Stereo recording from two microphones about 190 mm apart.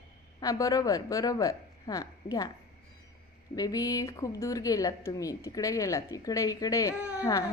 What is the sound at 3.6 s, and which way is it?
Speech, 20° left (ahead or behind).